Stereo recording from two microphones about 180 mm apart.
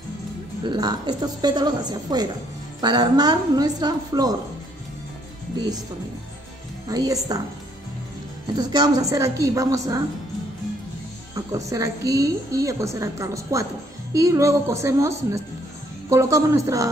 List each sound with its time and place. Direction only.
0.7 s a woman's voice: 20° right (ahead or behind)
6.9 s a woman's voice: 20° right (ahead or behind)
8.5 s a woman's voice: 20° right (ahead or behind)
11.3 s a woman's voice: 20° right (ahead or behind)